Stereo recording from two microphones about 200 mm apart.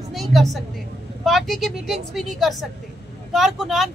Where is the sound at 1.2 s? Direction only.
Centre (ahead or behind).